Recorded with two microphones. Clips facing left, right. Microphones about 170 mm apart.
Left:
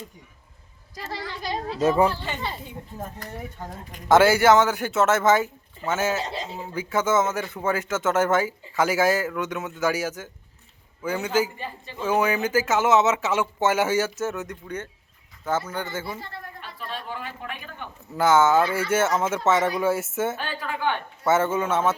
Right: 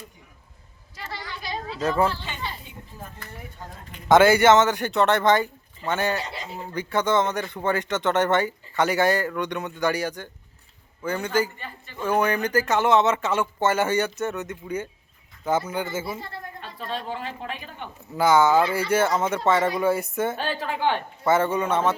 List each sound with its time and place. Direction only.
1.7 s a woman's voice: 15° left (ahead or behind)
3.2 s speech: 40° left (ahead or behind)
4.1 s a man's voice: 5° left (ahead or behind)
6.2 s speech: 25° left (ahead or behind)
6.6 s a man's voice: 5° left (ahead or behind)
16.7 s speech: 35° right (ahead or behind)
18.1 s a man's voice: centre (ahead or behind)
20.3 s a woman's voice: 30° right (ahead or behind)
21.2 s a man's voice: centre (ahead or behind)